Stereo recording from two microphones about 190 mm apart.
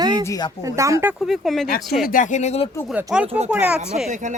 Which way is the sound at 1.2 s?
Centre (ahead or behind).